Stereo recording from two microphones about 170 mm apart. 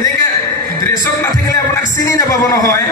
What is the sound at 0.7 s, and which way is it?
A man's voice, 15° left (ahead or behind).